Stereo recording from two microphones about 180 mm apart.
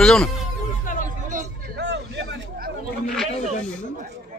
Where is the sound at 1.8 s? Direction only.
75° right (ahead or behind).